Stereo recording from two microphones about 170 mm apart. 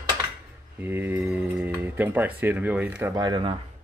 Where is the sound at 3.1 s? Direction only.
25° right (ahead or behind).